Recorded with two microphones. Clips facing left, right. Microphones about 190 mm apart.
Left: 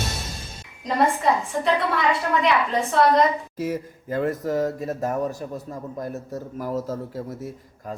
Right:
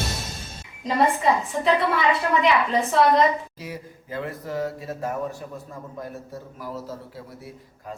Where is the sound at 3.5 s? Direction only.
50° left (ahead or behind).